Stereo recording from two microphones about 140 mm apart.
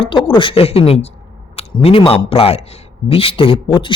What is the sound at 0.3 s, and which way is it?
A man's voice, 40° left (ahead or behind).